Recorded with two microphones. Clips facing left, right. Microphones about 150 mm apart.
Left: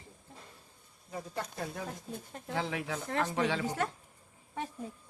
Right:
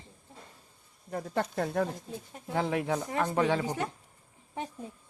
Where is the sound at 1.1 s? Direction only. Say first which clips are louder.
Right 8 dB; 60° right (ahead or behind).